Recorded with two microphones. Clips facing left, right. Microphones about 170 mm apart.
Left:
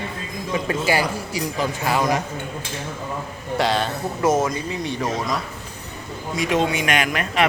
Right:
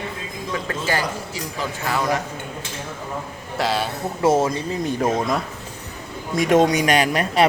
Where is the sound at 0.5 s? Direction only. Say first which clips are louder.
Left 3 dB; 15° left (ahead or behind).